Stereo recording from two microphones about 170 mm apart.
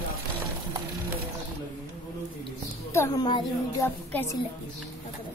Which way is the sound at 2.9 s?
20° left (ahead or behind).